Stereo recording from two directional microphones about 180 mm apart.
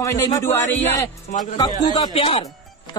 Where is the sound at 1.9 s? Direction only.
30° left (ahead or behind).